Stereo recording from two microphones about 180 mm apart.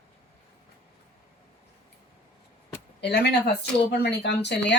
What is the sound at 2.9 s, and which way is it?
Speech, 70° left (ahead or behind).